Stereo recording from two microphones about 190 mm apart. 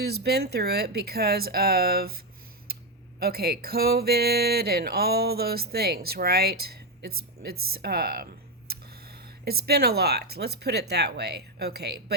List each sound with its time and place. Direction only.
0.0 s speech: 60° right (ahead or behind)